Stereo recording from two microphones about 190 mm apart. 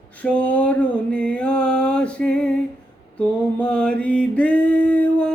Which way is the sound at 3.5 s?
5° left (ahead or behind).